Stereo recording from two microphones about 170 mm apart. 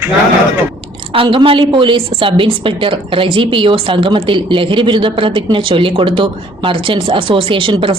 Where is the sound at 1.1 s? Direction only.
30° right (ahead or behind).